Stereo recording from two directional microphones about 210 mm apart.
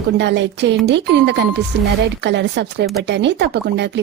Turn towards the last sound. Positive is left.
turn(degrees=-55)  # may be behind; listen again after turning